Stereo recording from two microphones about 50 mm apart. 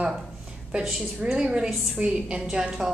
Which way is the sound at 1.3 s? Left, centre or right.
Centre.